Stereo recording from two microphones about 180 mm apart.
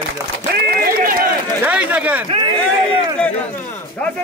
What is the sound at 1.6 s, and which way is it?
Speech, 5° right (ahead or behind).